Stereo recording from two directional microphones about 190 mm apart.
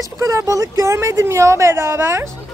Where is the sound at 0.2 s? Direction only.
15° right (ahead or behind).